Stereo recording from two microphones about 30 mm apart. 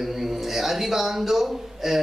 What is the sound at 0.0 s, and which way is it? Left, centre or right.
A man's voice, centre.